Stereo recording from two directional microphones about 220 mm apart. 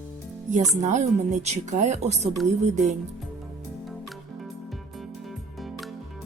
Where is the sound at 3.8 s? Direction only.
Centre (ahead or behind).